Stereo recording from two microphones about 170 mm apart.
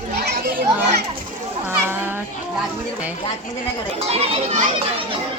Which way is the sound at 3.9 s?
35° right (ahead or behind).